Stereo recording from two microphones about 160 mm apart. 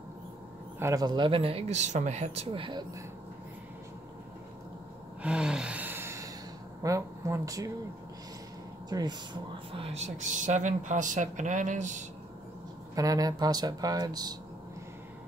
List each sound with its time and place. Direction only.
0.7 s speech: 20° right (ahead or behind)
5.2 s gasp: 5° right (ahead or behind)
6.8 s speech: 20° right (ahead or behind)
8.8 s speech: 25° right (ahead or behind); by 12.0 s 50° right (ahead or behind)
12.9 s speech: 20° right (ahead or behind)